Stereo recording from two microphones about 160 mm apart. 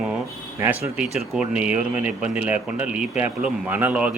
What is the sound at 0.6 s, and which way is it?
Speech, 10° right (ahead or behind).